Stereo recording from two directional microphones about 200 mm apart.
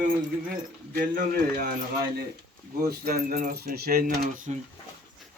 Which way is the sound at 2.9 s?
50° right (ahead or behind).